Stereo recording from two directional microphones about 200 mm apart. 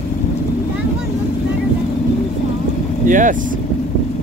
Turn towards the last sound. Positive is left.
turn(degrees=-40)  # may be behind; listen again after turning